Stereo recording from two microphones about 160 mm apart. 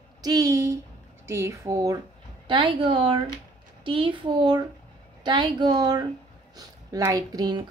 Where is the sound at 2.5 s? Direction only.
30° right (ahead or behind).